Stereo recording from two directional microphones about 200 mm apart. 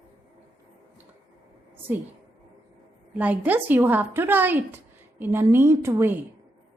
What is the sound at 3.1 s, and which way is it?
A woman's voice, 5° right (ahead or behind).